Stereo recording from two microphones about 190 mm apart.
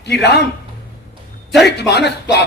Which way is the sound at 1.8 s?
60° left (ahead or behind).